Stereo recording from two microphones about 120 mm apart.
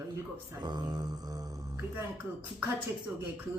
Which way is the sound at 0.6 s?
35° right (ahead or behind).